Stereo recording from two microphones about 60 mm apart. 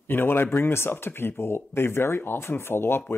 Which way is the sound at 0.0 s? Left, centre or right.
Left.